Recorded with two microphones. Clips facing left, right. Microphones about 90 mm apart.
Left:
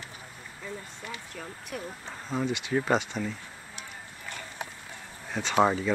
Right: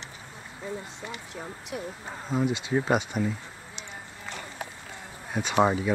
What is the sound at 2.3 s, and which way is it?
Speech, 10° right (ahead or behind).